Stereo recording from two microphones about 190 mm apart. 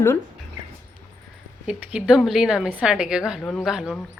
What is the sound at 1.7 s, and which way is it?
A woman's voice, 5° right (ahead or behind).